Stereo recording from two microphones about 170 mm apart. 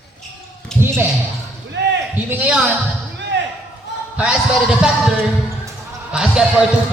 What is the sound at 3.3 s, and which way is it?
Basketball bounce, 90° right.